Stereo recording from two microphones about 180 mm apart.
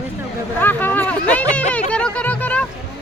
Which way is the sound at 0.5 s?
10° left (ahead or behind).